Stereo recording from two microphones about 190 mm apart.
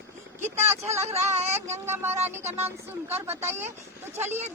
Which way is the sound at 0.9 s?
35° right (ahead or behind).